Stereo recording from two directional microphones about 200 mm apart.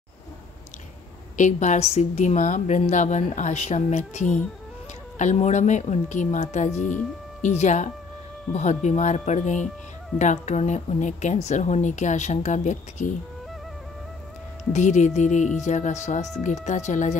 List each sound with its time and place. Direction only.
1.3 s a woman's voice: 40° left (ahead or behind)
6.7 s speech: 5° left (ahead or behind)
7.4 s a woman's voice: 35° left (ahead or behind)
14.7 s a woman's voice: 35° left (ahead or behind)